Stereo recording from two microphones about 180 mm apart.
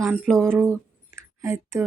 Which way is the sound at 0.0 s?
10° right (ahead or behind).